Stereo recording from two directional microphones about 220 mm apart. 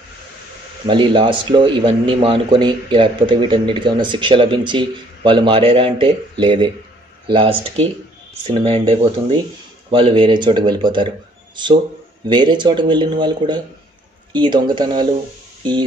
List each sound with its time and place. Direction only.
0.8 s a man's voice: 20° right (ahead or behind)